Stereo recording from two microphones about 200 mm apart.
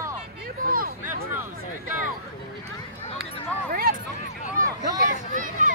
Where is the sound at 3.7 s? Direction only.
45° right (ahead or behind).